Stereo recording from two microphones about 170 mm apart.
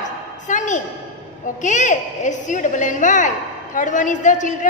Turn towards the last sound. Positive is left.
turn(degrees=45)  # may be behind; listen again after turning